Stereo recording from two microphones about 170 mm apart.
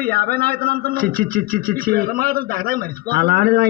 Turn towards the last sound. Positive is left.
turn(degrees=-60)  # may be behind; listen again after turning